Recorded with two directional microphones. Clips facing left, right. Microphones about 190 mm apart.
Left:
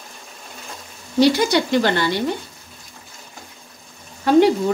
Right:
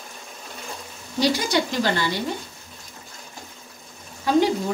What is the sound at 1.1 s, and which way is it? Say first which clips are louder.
Speech: left 6 dB; 65° left (ahead or behind).